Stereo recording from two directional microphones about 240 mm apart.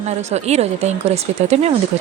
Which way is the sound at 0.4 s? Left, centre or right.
Right.